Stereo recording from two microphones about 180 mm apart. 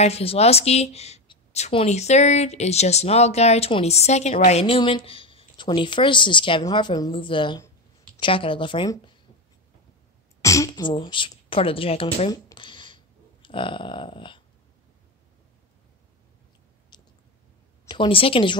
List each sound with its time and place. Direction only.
0.0 s a woman's voice: 35° left (ahead or behind)
10.4 s speech: 15° left (ahead or behind); by 12.3 s 30° left (ahead or behind)
12.3 s a sound: 25° left (ahead or behind)
16.9 s chewing: 25° left (ahead or behind)
17.8 s speech: 25° left (ahead or behind)